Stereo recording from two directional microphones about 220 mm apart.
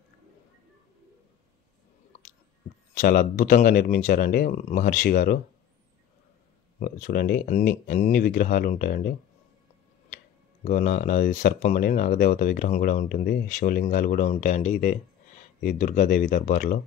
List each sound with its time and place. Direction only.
3.0 s speech: 40° left (ahead or behind)
6.8 s speech: 40° left (ahead or behind)
10.1 s speech: 35° left (ahead or behind)